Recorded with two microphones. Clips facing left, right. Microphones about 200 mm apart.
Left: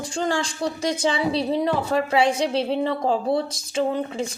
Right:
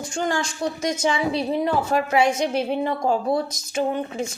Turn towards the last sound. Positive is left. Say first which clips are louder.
# even
turn(degrees=30)  # may be behind; listen again after turning